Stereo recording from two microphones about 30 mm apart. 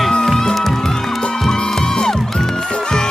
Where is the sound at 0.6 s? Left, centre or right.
Centre.